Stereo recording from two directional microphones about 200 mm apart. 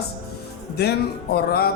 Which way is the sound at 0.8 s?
55° left (ahead or behind).